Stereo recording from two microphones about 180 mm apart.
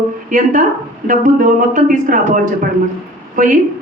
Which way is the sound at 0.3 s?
45° right (ahead or behind).